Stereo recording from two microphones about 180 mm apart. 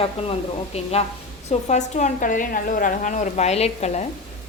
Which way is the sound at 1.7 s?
45° left (ahead or behind).